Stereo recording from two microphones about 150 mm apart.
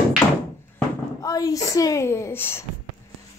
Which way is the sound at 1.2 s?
20° left (ahead or behind).